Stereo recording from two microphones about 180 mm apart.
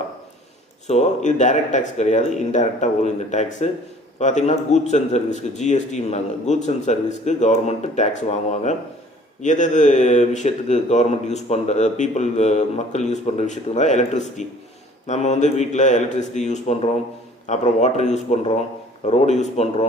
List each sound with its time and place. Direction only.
0.9 s speech: 40° left (ahead or behind)